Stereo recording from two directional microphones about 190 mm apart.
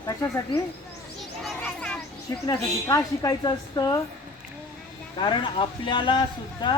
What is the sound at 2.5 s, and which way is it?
Speech, 20° left (ahead or behind).